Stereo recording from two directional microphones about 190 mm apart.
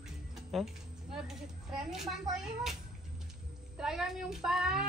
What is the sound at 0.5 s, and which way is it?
Speech, centre (ahead or behind).